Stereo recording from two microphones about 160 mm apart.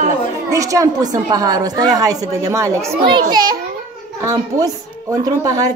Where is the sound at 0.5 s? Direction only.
20° right (ahead or behind).